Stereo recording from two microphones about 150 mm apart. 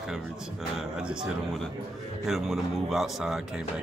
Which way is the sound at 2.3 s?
Centre (ahead or behind).